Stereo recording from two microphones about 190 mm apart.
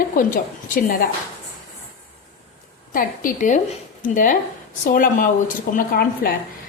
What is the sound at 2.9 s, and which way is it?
A woman's voice, 45° left (ahead or behind).